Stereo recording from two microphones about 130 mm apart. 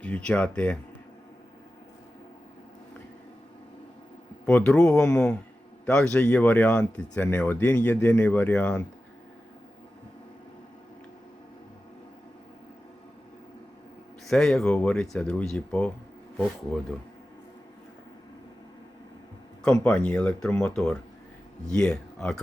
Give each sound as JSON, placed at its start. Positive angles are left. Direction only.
{"t": 0.0, "sound": "speech", "side_deg": 10}
{"t": 4.4, "sound": "speech", "side_deg": 10}
{"t": 14.3, "sound": "speech", "side_deg": 5}
{"t": 19.6, "sound": "speech", "side_deg": 5}